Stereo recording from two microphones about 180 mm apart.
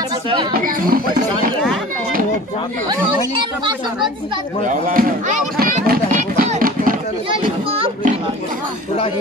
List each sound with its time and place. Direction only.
0.5 s speech: 55° right (ahead or behind)
4.6 s speech: 45° right (ahead or behind)
5.6 s a sound: 55° right (ahead or behind)